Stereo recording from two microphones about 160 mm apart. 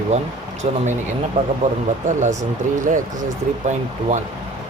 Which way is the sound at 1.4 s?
45° right (ahead or behind).